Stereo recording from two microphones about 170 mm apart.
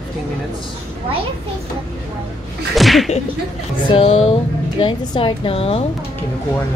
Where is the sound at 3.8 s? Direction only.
35° left (ahead or behind).